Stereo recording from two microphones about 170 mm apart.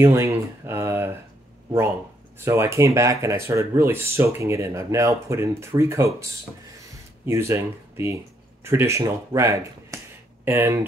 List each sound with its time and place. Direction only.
0.0 s a sound: 15° right (ahead or behind)
2.3 s speech: 15° right (ahead or behind)
7.2 s speech: 15° right (ahead or behind)